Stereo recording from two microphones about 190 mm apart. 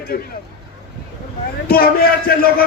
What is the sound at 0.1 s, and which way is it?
Speech, 55° left (ahead or behind).